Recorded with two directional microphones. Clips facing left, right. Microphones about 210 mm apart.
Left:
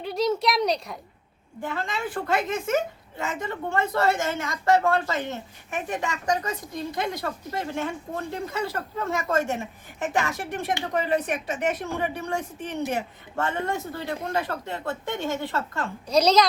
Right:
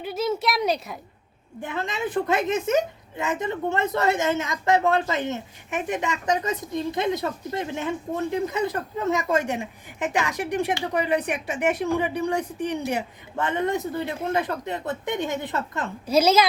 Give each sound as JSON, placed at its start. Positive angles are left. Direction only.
{"t": 0.0, "sound": "speech", "side_deg": -5}
{"t": 1.6, "sound": "a woman's voice", "side_deg": -20}
{"t": 16.0, "sound": "speech", "side_deg": -5}